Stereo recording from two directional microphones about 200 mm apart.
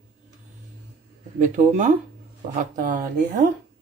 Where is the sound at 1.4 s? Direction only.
40° right (ahead or behind).